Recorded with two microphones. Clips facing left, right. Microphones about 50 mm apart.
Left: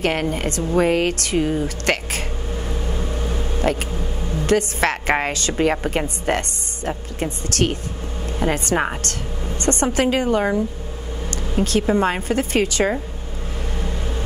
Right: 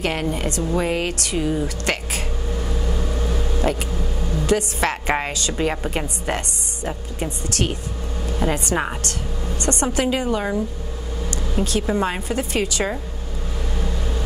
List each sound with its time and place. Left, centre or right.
0.0 s a woman's voice: left
1.9 s a sound: left
2.5 s vehicle: left
3.6 s a woman's voice: left
4.0 s vehicle: centre
4.5 s a woman's voice: left
8.3 s a woman's voice: left
9.6 s a sound: left
9.9 s a woman's voice: left
11.2 s vehicle: left
12.0 s a woman's voice: left
13.7 s vehicle: left